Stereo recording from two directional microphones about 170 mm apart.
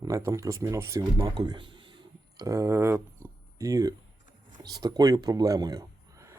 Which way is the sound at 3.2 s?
15° right (ahead or behind).